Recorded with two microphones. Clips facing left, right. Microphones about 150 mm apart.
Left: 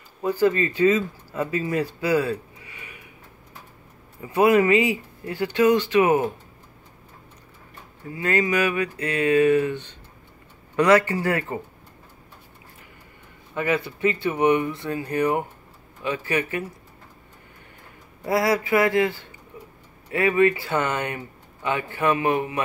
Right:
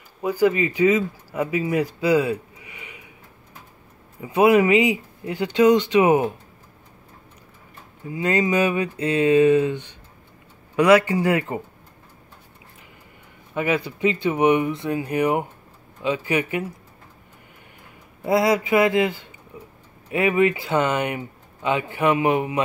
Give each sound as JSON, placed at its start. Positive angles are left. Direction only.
{"t": 0.2, "sound": "speech", "side_deg": -15}
{"t": 4.2, "sound": "speech", "side_deg": -15}
{"t": 8.1, "sound": "speech", "side_deg": -20}
{"t": 13.6, "sound": "speech", "side_deg": -15}
{"t": 18.2, "sound": "speech", "side_deg": -20}
{"t": 19.5, "sound": "tick-tock", "side_deg": -15}
{"t": 20.1, "sound": "speech", "side_deg": -20}